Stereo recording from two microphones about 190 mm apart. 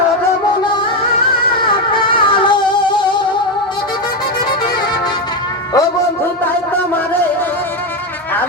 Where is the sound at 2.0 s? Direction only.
25° left (ahead or behind).